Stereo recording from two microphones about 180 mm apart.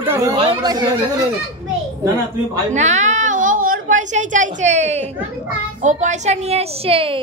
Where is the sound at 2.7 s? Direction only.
40° right (ahead or behind).